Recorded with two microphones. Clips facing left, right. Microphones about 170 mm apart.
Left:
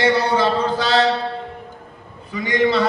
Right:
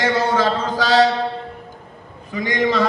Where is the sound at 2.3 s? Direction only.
40° right (ahead or behind).